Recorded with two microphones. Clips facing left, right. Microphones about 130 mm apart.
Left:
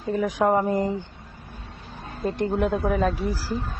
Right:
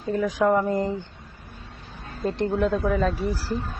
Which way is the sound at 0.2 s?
20° left (ahead or behind).